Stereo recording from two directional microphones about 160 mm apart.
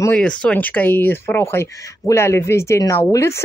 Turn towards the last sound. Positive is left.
turn(degrees=20)  # may be behind; listen again after turning